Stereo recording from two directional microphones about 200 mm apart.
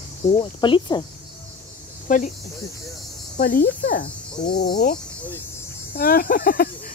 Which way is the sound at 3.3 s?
45° left (ahead or behind).